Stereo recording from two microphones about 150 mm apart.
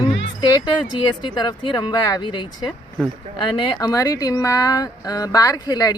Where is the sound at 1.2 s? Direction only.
30° left (ahead or behind).